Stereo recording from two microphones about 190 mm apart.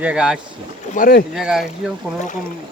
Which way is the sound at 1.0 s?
50° left (ahead or behind).